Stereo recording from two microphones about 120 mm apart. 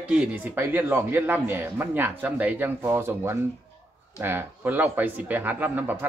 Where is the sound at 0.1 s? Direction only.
15° right (ahead or behind).